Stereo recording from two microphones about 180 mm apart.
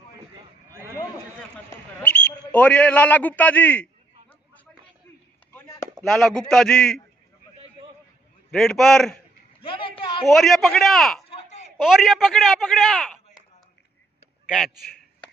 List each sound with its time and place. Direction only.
2.0 s a man's voice: 10° left (ahead or behind)
5.5 s chop: 15° left (ahead or behind)
5.9 s a man's voice: centre (ahead or behind)
8.5 s a man's voice: centre (ahead or behind)
9.6 s a sound: 30° left (ahead or behind)
10.2 s a man's voice: centre (ahead or behind)
11.2 s a sound: 35° left (ahead or behind)
11.7 s a man's voice: 5° right (ahead or behind)